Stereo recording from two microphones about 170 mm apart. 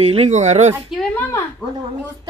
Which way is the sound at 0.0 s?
35° right (ahead or behind).